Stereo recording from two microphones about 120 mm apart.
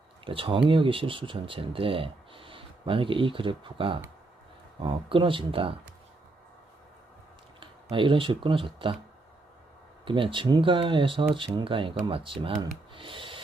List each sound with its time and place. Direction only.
0.3 s speech: 45° right (ahead or behind)
7.6 s speech: 45° right (ahead or behind)
10.1 s speech: 45° right (ahead or behind)
12.9 s snort: 45° right (ahead or behind)